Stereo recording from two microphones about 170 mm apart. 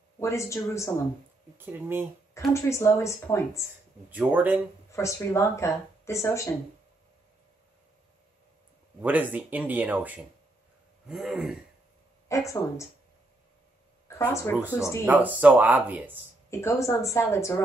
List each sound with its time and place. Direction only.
0.2 s speech: 15° left (ahead or behind)
1.6 s speech: 10° right (ahead or behind)
2.5 s speech: 15° left (ahead or behind)
4.1 s speech: 10° right (ahead or behind)
4.9 s speech: 15° left (ahead or behind)
9.0 s speech: 10° right (ahead or behind)
11.1 s throat clearing: 5° right (ahead or behind)
12.3 s speech: 15° left (ahead or behind)
14.0 s a sound: 15° left (ahead or behind)
15.0 s speech: 10° right (ahead or behind)
16.4 s speech: 15° left (ahead or behind)